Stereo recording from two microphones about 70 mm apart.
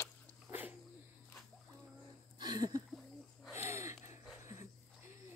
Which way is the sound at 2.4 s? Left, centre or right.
Right.